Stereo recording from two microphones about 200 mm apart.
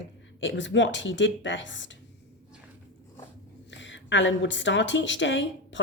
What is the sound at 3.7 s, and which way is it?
A woman's voice, 65° left (ahead or behind).